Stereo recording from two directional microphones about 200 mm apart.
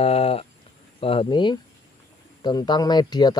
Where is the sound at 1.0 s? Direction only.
25° left (ahead or behind).